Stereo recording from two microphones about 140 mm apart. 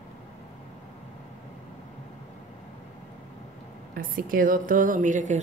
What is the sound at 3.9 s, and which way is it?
A woman's voice, 90° right.